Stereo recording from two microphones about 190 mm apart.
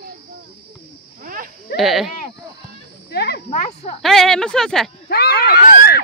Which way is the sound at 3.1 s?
60° left (ahead or behind).